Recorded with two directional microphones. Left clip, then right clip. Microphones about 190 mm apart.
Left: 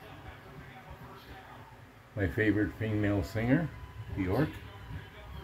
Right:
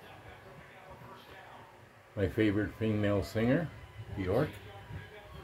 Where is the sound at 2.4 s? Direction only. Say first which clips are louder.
Left 2 dB; 25° right (ahead or behind).